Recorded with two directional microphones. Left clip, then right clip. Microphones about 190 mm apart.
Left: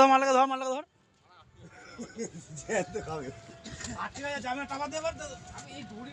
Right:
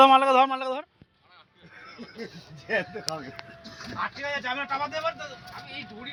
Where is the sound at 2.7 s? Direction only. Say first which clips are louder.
Right 3 dB; 35° left (ahead or behind).